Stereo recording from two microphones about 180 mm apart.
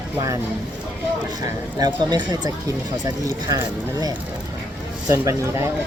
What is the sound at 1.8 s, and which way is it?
Speech, 25° right (ahead or behind).